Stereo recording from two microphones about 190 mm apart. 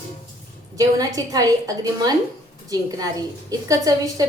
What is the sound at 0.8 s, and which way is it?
Speech, 20° right (ahead or behind).